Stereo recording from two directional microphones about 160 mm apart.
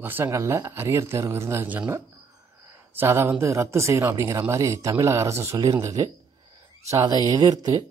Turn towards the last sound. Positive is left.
turn(degrees=-25)  # may be behind; listen again after turning